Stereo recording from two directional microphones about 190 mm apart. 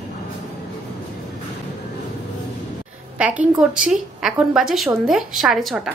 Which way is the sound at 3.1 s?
5° right (ahead or behind).